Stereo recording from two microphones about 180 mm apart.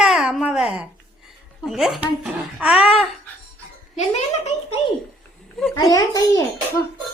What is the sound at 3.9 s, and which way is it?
Speech, 35° left (ahead or behind).